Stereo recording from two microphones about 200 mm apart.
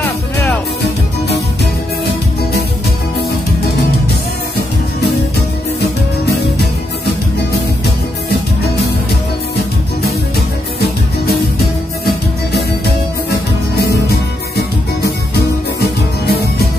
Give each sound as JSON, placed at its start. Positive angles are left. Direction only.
{"t": 5.8, "sound": "music", "side_deg": 55}
{"t": 14.6, "sound": "music", "side_deg": 55}